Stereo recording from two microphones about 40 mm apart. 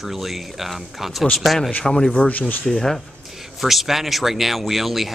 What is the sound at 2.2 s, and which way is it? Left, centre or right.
Speech, left.